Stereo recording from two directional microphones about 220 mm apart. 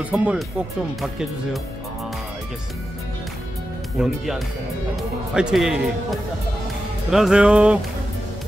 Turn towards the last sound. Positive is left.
turn(degrees=-5)  # may be behind; listen again after turning